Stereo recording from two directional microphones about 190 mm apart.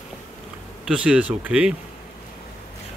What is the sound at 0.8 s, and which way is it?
Speech, 5° right (ahead or behind).